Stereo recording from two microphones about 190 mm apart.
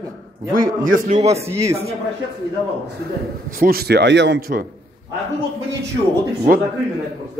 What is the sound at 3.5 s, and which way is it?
Speech, 50° right (ahead or behind).